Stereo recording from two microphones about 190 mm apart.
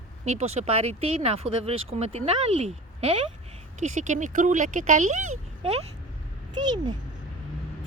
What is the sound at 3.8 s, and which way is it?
Speech, 40° right (ahead or behind).